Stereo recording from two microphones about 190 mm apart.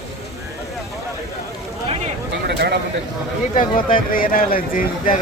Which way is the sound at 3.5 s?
45° left (ahead or behind).